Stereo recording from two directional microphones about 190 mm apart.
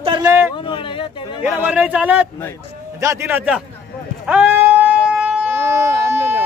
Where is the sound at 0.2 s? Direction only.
15° right (ahead or behind).